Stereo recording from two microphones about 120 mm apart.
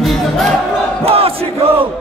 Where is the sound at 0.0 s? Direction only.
Centre (ahead or behind).